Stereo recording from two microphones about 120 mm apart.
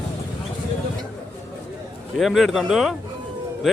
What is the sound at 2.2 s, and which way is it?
Speech, centre (ahead or behind).